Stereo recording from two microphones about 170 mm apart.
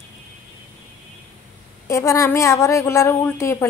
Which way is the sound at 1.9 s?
15° left (ahead or behind).